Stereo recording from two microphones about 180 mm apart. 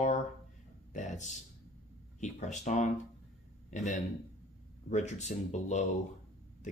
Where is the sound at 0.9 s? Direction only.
45° left (ahead or behind).